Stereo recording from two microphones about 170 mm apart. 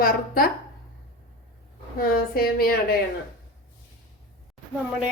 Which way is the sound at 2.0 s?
60° left (ahead or behind).